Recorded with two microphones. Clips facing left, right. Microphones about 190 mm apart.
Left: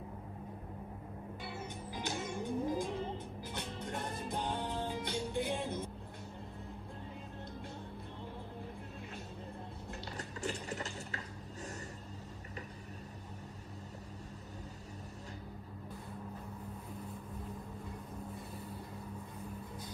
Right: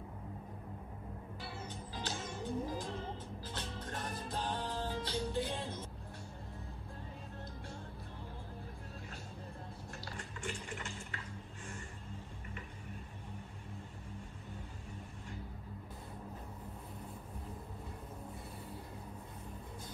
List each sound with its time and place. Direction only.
2.0 s music: 15° left (ahead or behind)
10.1 s mechanisms: 40° left (ahead or behind)